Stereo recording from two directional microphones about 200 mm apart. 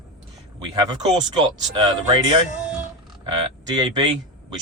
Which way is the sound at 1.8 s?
20° right (ahead or behind).